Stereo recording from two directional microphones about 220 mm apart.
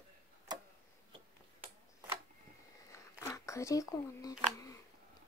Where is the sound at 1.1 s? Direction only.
25° right (ahead or behind).